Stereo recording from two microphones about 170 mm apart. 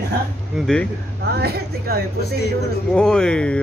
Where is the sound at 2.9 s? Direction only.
5° left (ahead or behind).